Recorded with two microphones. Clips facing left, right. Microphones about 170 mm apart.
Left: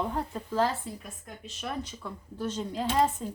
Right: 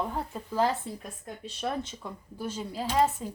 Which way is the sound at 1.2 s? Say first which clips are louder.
Right 5 dB; 35° right (ahead or behind).